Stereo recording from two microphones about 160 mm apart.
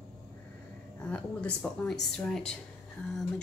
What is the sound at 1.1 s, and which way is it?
Speech, 5° left (ahead or behind).